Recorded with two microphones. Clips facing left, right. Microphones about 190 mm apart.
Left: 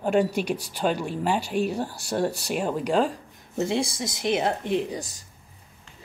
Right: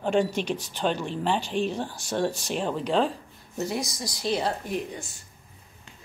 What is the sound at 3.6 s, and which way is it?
Speech, 25° left (ahead or behind).